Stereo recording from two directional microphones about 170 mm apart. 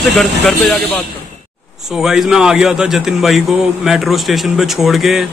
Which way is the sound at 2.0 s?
Centre (ahead or behind).